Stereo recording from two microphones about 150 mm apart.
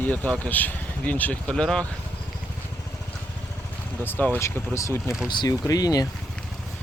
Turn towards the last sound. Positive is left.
turn(degrees=25)  # may be behind; listen again after turning